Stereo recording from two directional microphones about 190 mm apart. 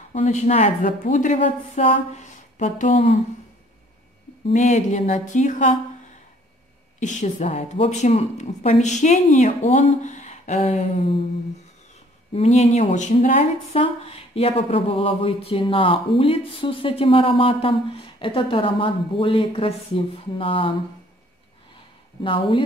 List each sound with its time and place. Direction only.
0.1 s speech: 35° left (ahead or behind)
4.5 s speech: 40° left (ahead or behind)
7.0 s speech: 40° left (ahead or behind)
12.4 s speech: 35° left (ahead or behind)
22.2 s speech: 25° left (ahead or behind)